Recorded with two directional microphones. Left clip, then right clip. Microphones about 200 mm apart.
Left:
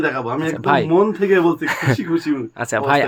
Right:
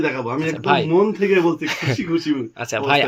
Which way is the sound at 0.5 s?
30° left (ahead or behind).